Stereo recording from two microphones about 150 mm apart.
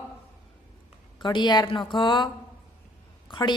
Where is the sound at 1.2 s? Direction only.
30° left (ahead or behind).